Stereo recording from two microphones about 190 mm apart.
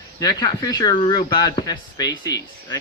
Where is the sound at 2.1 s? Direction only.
65° left (ahead or behind).